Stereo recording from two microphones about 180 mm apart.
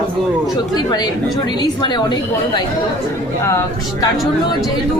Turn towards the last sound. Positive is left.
turn(degrees=15)  # may be behind; listen again after turning